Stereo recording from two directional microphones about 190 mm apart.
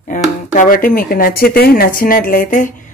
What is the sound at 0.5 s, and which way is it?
Speech, 45° left (ahead or behind).